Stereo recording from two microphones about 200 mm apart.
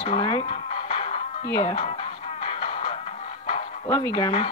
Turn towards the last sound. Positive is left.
turn(degrees=25)  # may be behind; listen again after turning